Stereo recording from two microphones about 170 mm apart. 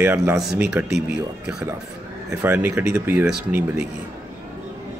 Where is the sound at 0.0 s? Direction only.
15° right (ahead or behind).